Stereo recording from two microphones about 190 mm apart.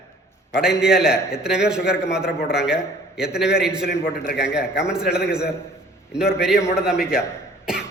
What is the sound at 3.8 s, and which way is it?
Speech, 60° left (ahead or behind).